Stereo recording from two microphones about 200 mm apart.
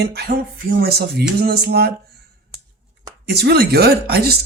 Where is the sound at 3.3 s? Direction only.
55° right (ahead or behind).